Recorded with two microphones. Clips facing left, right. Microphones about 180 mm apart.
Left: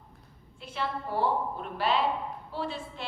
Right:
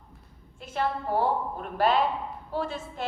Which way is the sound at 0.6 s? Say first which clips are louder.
Right 5 dB; 45° right (ahead or behind).